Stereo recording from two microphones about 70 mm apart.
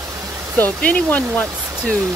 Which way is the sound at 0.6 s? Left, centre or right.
Left.